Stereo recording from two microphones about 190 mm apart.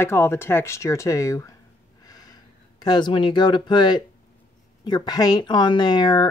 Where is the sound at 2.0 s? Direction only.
20° left (ahead or behind).